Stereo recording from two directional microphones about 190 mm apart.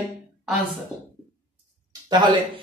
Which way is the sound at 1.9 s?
20° right (ahead or behind).